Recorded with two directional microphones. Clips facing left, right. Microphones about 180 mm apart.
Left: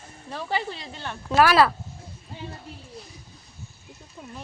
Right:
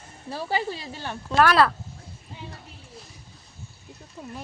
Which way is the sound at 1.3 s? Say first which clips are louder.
Left 1 dB; 5° left (ahead or behind).